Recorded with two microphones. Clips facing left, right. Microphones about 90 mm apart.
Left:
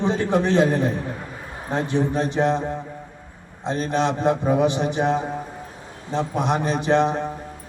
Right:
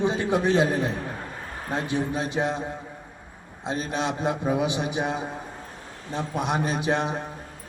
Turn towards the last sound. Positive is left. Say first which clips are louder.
# left 6 dB
turn(degrees=-10)  # may be behind; listen again after turning